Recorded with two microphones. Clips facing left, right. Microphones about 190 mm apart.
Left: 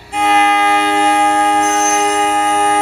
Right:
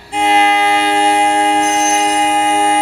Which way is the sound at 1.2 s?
25° right (ahead or behind).